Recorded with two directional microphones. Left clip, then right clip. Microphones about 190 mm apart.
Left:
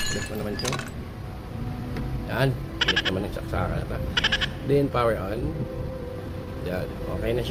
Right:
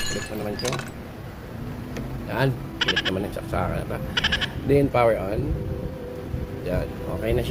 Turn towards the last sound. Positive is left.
turn(degrees=-10)  # may be behind; listen again after turning